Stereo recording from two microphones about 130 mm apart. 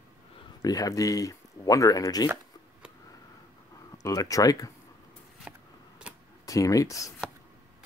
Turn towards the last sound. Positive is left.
turn(degrees=25)  # may be behind; listen again after turning